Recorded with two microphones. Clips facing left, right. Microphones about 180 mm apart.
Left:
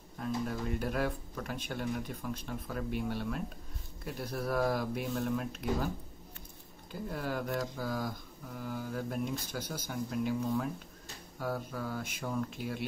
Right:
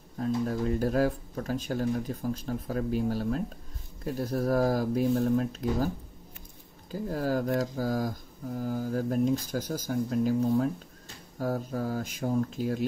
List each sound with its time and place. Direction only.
0.2 s music: 35° right (ahead or behind)
1.7 s speech: 35° right (ahead or behind)
5.1 s speech: 45° right (ahead or behind)
6.9 s speech: 40° right (ahead or behind)